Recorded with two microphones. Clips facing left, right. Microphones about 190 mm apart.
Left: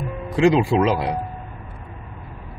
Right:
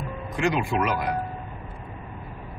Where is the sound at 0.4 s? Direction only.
30° left (ahead or behind).